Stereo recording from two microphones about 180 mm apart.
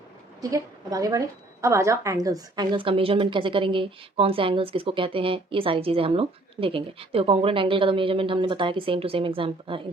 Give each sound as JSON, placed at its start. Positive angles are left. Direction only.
{"t": 0.5, "sound": "a woman's voice", "side_deg": -20}